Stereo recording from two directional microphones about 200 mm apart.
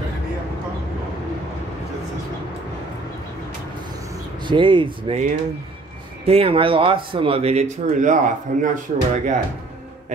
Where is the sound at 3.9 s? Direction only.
25° right (ahead or behind).